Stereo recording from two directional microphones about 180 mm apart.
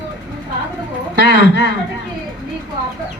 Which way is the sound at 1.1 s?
65° right (ahead or behind).